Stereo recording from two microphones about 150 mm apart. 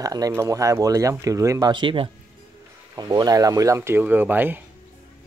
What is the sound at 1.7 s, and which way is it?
Speech, 35° right (ahead or behind).